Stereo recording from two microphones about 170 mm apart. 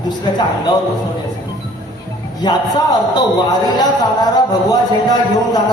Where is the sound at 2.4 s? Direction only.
25° left (ahead or behind).